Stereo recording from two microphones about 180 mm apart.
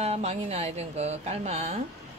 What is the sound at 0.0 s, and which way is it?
Speech, 35° right (ahead or behind).